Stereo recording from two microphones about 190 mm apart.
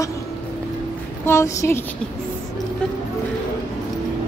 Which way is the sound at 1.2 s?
15° left (ahead or behind).